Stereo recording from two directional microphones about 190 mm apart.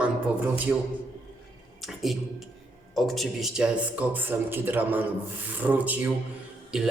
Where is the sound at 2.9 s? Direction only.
Centre (ahead or behind).